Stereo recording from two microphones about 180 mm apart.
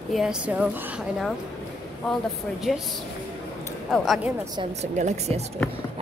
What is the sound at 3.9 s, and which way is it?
Speech, centre (ahead or behind).